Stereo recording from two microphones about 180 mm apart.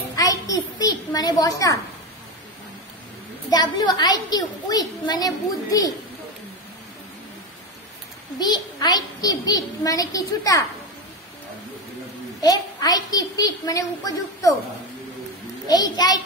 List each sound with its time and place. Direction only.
0.1 s a sound: 20° left (ahead or behind)
3.4 s a woman's voice: 20° left (ahead or behind)
8.4 s a woman's voice: 20° left (ahead or behind)
12.4 s a woman's voice: 20° left (ahead or behind)
15.6 s a woman's voice: 20° left (ahead or behind)